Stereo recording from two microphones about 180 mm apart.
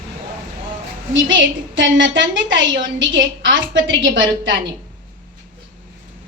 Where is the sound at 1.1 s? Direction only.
90° right.